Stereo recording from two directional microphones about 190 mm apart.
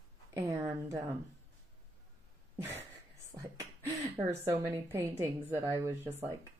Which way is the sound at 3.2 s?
15° right (ahead or behind).